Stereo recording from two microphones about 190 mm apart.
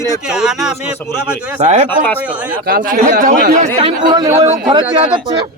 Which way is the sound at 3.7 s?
25° right (ahead or behind).